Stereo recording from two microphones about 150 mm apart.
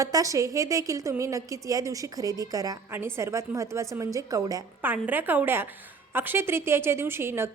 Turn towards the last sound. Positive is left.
turn(degrees=-15)  # may be behind; listen again after turning